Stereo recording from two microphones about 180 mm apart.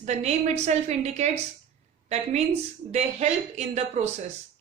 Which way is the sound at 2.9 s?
40° right (ahead or behind).